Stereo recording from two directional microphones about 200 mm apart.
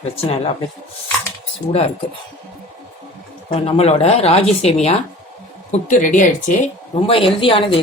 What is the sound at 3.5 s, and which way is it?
A woman's voice, 30° left (ahead or behind).